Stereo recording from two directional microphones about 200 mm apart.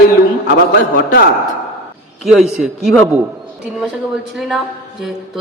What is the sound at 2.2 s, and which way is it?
A woman's voice, centre (ahead or behind).